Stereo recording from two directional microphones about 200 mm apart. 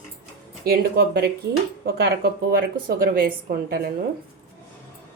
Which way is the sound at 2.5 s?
45° right (ahead or behind).